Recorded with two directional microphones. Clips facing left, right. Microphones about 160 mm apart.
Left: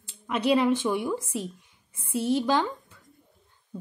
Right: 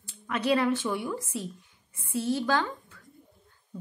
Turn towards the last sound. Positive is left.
turn(degrees=20)  # may be behind; listen again after turning